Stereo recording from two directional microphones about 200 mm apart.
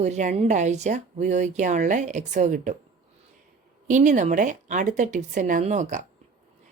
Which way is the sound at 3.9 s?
40° right (ahead or behind).